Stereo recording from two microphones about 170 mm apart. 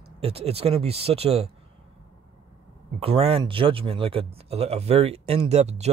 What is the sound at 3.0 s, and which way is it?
Speech, 35° right (ahead or behind).